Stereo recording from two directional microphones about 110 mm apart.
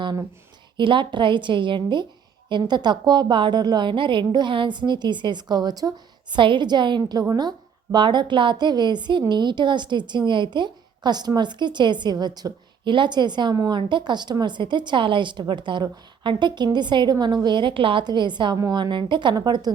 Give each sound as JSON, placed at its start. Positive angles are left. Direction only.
{"t": 0.8, "sound": "a woman's voice", "side_deg": -45}